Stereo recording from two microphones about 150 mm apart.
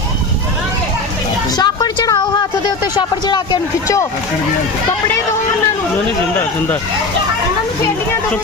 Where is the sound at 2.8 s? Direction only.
25° left (ahead or behind).